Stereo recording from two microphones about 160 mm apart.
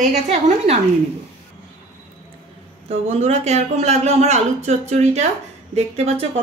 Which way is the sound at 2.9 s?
40° right (ahead or behind).